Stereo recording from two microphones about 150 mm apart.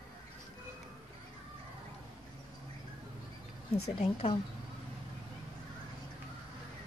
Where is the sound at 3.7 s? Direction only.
40° left (ahead or behind).